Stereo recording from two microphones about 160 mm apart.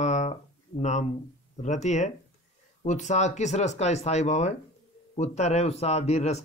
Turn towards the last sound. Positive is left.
turn(degrees=45)  # may be behind; listen again after turning